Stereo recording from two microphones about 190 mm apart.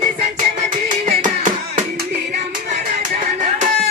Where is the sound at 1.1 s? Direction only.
40° right (ahead or behind).